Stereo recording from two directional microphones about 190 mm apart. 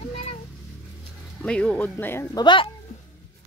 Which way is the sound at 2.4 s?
25° left (ahead or behind).